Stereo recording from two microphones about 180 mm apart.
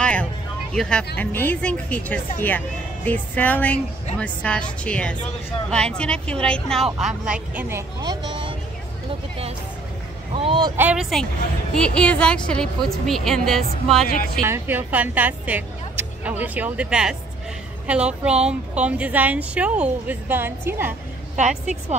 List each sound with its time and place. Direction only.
0.0 s a sound: 5° left (ahead or behind)
0.7 s a woman's voice: 5° left (ahead or behind)
8.0 s speech: 25° right (ahead or behind)
10.3 s speech: 30° right (ahead or behind)
10.8 s a woman's voice: 5° right (ahead or behind)
14.0 s speech: 55° left (ahead or behind)
14.4 s a woman's voice: 15° right (ahead or behind)